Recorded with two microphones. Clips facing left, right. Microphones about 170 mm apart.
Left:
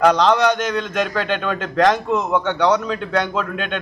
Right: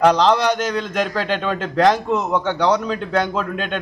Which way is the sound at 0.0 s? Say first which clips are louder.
Even; 35° right (ahead or behind).